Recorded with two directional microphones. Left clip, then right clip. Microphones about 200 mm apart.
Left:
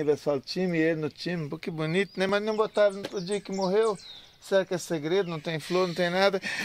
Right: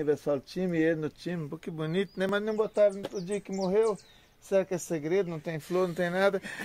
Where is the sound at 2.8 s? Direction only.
30° left (ahead or behind).